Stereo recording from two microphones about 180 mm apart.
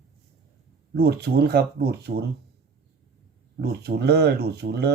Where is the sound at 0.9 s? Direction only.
60° right (ahead or behind).